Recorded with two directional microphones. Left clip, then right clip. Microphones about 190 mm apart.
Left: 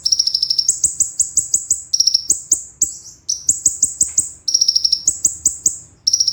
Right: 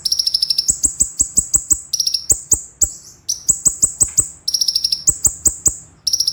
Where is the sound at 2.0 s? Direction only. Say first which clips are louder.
Left 5 dB; 25° right (ahead or behind).